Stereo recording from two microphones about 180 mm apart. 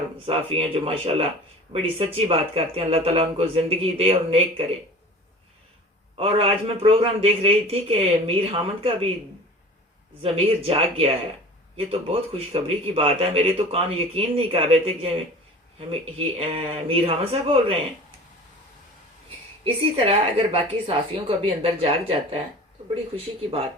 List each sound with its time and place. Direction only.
0.3 s speech: 30° right (ahead or behind)
6.1 s speech: 30° right (ahead or behind)
10.3 s speech: 30° right (ahead or behind)
19.6 s speech: 30° right (ahead or behind)